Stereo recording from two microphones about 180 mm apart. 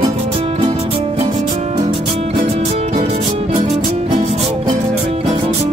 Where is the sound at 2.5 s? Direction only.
35° right (ahead or behind).